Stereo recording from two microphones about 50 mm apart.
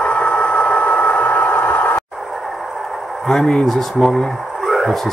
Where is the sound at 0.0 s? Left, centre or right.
Left.